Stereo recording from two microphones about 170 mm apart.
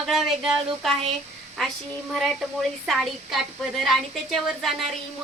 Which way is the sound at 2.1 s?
Centre (ahead or behind).